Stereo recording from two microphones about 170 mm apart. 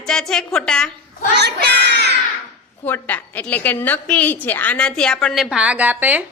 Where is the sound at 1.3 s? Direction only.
80° right.